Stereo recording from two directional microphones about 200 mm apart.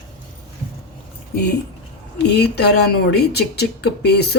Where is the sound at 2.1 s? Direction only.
55° left (ahead or behind).